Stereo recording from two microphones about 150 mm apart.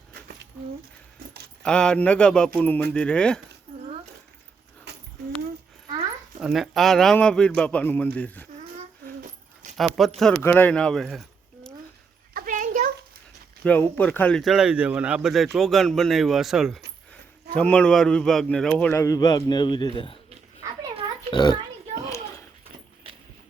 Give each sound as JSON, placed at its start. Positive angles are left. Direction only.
{"t": 1.6, "sound": "a man's voice", "side_deg": 5}
{"t": 6.4, "sound": "a man's voice", "side_deg": 0}
{"t": 9.7, "sound": "speech", "side_deg": 0}
{"t": 10.4, "sound": "speech", "side_deg": 10}
{"t": 12.3, "sound": "a sound", "side_deg": -65}
{"t": 13.7, "sound": "speech", "side_deg": 10}
{"t": 18.8, "sound": "speech", "side_deg": 15}
{"t": 21.2, "sound": "a sound", "side_deg": 30}
{"t": 23.1, "sound": "clip-clop", "side_deg": -40}